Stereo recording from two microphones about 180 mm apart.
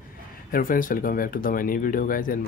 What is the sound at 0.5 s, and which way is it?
Speech, 50° left (ahead or behind).